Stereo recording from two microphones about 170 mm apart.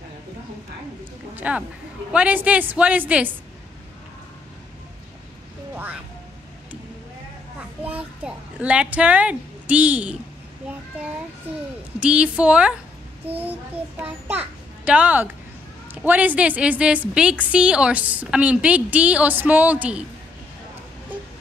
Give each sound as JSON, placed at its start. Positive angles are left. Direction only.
{"t": 1.3, "sound": "a woman's voice", "side_deg": -10}
{"t": 7.8, "sound": "a woman's voice", "side_deg": -5}
{"t": 12.0, "sound": "a woman's voice", "side_deg": -5}